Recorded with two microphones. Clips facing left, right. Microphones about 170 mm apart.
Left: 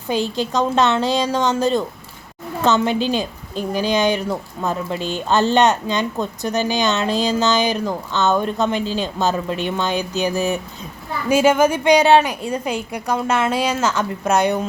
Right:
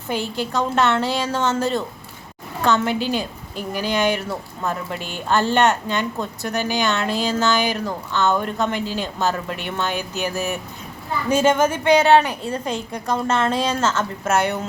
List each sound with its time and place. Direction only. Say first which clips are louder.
0.1 s a woman's voice: left 3 dB; 15° left (ahead or behind)